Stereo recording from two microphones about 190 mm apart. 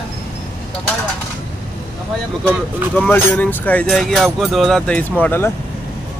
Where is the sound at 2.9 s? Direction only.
10° left (ahead or behind).